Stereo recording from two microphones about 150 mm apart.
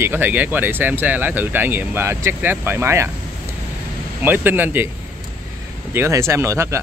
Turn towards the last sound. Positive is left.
turn(degrees=-20)  # may be behind; listen again after turning